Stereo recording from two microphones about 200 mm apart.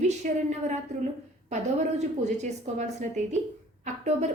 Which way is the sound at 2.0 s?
35° right (ahead or behind).